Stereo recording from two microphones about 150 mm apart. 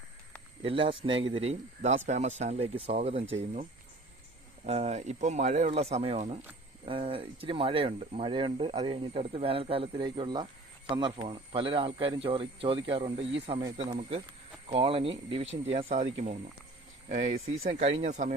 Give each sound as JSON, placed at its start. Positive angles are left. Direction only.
{"t": 0.6, "sound": "speech", "side_deg": -35}
{"t": 14.7, "sound": "speech", "side_deg": -35}